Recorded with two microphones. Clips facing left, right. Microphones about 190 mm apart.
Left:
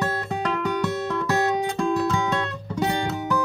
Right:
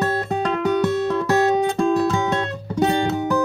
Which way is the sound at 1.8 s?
35° right (ahead or behind).